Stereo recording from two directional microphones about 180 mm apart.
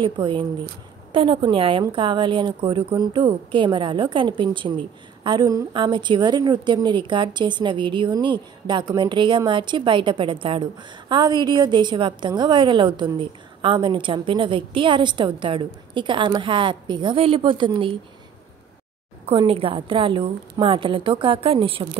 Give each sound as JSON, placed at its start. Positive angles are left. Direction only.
{"t": 0.0, "sound": "a woman's voice", "side_deg": -25}
{"t": 19.2, "sound": "a woman's voice", "side_deg": -30}